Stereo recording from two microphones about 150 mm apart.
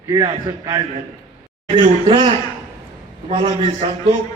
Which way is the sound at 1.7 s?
35° right (ahead or behind).